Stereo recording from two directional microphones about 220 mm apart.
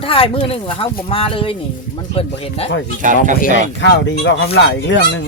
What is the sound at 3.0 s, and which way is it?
Speech, 35° right (ahead or behind).